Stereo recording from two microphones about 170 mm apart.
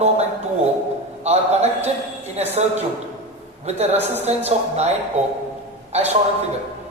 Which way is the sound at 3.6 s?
40° right (ahead or behind).